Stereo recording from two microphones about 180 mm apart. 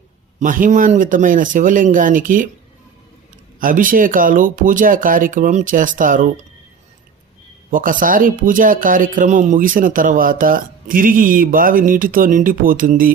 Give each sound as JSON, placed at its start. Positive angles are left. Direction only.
{"t": 0.3, "sound": "speech", "side_deg": -45}
{"t": 3.6, "sound": "speech", "side_deg": -50}
{"t": 7.7, "sound": "speech", "side_deg": -50}